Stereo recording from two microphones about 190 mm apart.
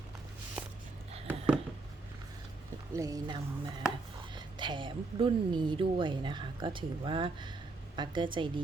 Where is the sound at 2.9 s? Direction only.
20° right (ahead or behind).